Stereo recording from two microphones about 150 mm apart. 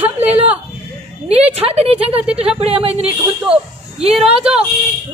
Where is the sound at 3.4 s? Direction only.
5° right (ahead or behind).